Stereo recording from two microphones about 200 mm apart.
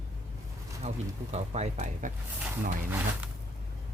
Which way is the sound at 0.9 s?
35° right (ahead or behind).